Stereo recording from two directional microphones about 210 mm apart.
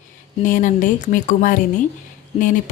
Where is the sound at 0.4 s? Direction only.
40° left (ahead or behind).